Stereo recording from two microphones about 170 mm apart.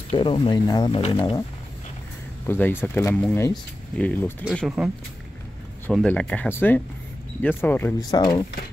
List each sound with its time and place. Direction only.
0.2 s speech: 30° left (ahead or behind)
2.4 s speech: 10° left (ahead or behind)
4.5 s speech: 5° right (ahead or behind)
8.1 s speech: 25° left (ahead or behind)